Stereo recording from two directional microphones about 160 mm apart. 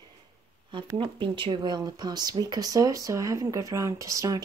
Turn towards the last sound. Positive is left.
turn(degrees=-20)  # may be behind; listen again after turning